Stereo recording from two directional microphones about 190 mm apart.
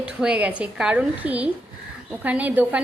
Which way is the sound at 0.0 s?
5° right (ahead or behind).